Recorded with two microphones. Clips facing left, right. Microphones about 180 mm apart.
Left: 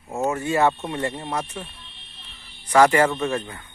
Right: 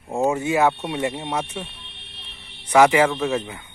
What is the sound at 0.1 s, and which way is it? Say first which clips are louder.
Speech: right 3 dB; 15° right (ahead or behind).